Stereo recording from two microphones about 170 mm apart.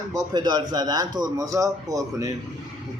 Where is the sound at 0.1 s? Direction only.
25° right (ahead or behind).